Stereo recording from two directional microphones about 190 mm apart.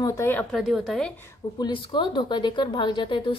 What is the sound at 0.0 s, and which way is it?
Speech, 15° left (ahead or behind).